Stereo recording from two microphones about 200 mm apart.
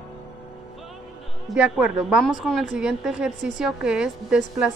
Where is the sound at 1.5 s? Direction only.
5° right (ahead or behind).